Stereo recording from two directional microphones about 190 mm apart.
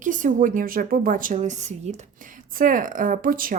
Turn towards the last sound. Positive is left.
turn(degrees=-45)  # may be behind; listen again after turning